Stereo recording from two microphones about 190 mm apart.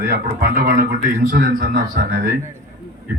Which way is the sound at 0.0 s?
50° right (ahead or behind).